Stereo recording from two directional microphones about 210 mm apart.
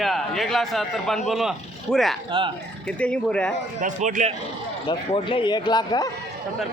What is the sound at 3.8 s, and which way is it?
Speech, 35° right (ahead or behind).